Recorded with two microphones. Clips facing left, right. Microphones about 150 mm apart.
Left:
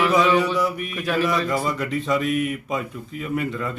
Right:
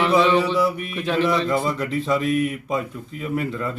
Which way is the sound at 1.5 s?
Centre (ahead or behind).